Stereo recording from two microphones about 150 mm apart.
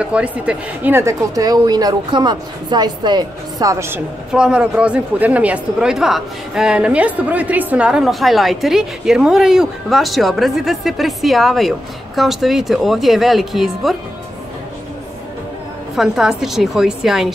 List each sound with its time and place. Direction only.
0.0 s a woman's voice: 5° right (ahead or behind)
4.3 s speech: 5° right (ahead or behind)
16.0 s speech: centre (ahead or behind)